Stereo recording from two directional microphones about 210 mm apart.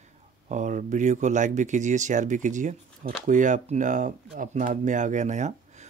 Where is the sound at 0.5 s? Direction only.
35° right (ahead or behind).